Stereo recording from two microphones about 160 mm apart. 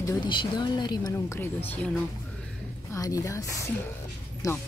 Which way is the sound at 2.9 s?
20° left (ahead or behind).